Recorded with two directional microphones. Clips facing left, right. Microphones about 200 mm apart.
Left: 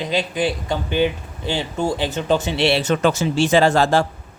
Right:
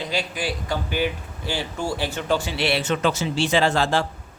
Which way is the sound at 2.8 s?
45° left (ahead or behind).